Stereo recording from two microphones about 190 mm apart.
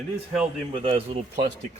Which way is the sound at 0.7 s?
30° right (ahead or behind).